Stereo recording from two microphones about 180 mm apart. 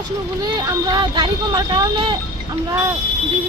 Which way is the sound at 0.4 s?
20° right (ahead or behind).